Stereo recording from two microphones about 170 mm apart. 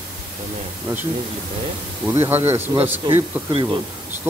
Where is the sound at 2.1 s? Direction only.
15° right (ahead or behind).